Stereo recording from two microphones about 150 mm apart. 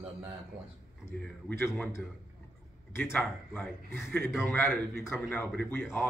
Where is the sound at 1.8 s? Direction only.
15° left (ahead or behind).